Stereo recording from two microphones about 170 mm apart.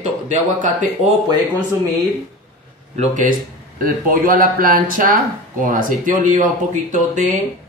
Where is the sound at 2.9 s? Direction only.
45° right (ahead or behind).